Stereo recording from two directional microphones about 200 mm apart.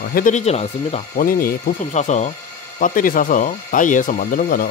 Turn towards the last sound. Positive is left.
turn(degrees=45)  # may be behind; listen again after turning